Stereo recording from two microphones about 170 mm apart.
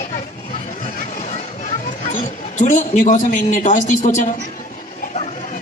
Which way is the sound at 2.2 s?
45° left (ahead or behind).